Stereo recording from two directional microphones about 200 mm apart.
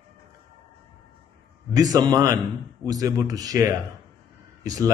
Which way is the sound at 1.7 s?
20° right (ahead or behind).